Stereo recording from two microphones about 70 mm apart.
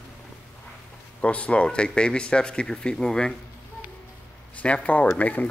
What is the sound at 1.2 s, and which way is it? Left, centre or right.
Speech, centre.